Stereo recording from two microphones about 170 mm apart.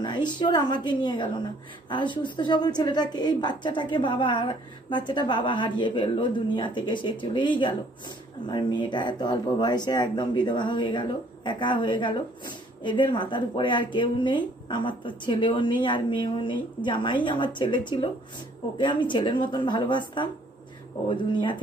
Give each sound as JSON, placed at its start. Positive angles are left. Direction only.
{"t": 0.0, "sound": "speech", "side_deg": 25}